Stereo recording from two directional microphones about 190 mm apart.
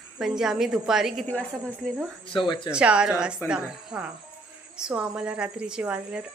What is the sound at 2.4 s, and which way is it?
Speech, 25° left (ahead or behind).